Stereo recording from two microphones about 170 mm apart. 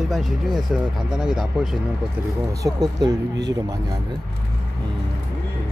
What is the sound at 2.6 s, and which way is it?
Speech, 25° right (ahead or behind).